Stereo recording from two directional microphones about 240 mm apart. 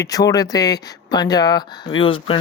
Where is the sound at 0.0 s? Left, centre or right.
Centre.